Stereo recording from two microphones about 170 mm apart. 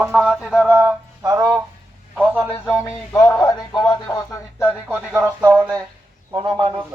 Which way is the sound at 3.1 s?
20° left (ahead or behind).